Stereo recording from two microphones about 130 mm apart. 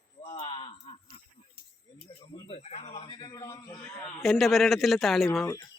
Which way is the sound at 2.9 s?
40° left (ahead or behind).